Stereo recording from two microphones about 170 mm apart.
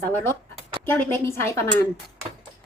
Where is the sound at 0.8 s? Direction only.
15° left (ahead or behind).